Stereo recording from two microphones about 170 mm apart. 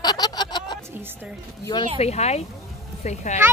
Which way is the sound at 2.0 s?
40° left (ahead or behind).